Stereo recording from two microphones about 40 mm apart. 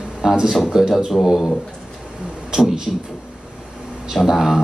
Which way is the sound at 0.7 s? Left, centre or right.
Centre.